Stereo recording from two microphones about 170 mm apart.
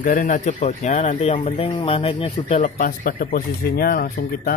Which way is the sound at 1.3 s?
30° left (ahead or behind).